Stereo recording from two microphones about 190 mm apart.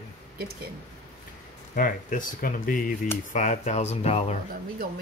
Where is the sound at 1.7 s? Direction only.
45° left (ahead or behind).